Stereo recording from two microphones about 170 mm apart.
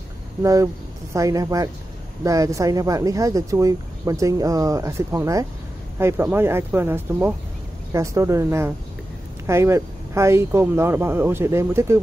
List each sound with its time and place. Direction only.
0.4 s speech: 20° right (ahead or behind)